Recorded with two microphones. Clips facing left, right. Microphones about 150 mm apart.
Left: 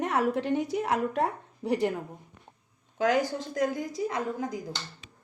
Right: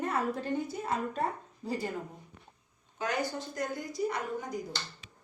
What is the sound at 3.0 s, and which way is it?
A woman's voice, 90° left.